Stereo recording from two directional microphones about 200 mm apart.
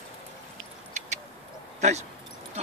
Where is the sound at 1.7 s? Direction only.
35° right (ahead or behind).